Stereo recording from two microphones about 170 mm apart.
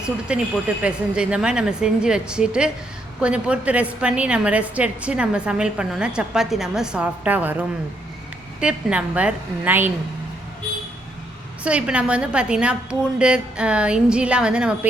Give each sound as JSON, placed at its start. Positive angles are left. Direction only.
{"t": 0.0, "sound": "a woman's voice", "side_deg": -5}
{"t": 8.6, "sound": "a woman's voice", "side_deg": -5}
{"t": 11.6, "sound": "a woman's voice", "side_deg": -5}